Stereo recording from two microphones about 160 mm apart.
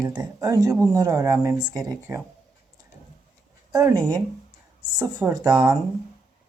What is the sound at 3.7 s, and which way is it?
Speech, 20° right (ahead or behind).